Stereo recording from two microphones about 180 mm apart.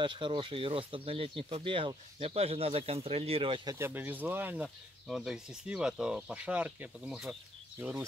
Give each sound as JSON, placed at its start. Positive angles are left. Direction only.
{"t": 0.0, "sound": "speech", "side_deg": -25}
{"t": 3.7, "sound": "speech", "side_deg": -10}
{"t": 7.8, "sound": "speech", "side_deg": -15}